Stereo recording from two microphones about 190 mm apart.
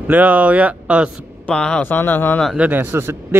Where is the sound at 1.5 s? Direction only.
5° left (ahead or behind).